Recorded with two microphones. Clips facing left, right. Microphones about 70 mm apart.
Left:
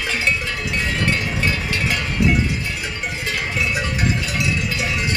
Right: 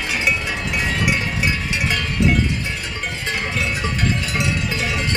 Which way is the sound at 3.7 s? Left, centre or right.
Centre.